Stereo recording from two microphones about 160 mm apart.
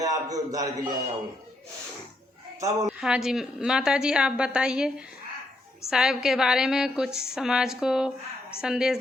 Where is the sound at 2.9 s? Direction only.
5° right (ahead or behind).